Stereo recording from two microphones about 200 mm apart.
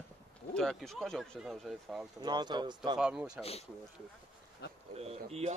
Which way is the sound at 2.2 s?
20° right (ahead or behind).